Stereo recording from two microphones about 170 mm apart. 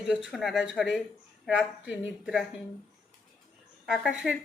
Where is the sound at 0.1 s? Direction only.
Centre (ahead or behind).